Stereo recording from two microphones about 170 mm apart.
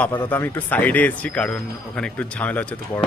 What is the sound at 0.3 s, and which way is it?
Speech, 10° left (ahead or behind).